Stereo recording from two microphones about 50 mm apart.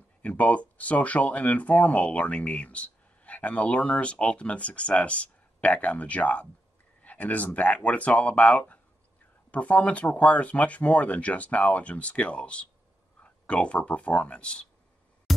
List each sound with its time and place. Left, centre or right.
0.2 s speech: left